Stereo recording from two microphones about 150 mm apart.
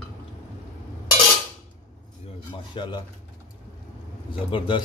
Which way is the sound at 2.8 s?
35° left (ahead or behind).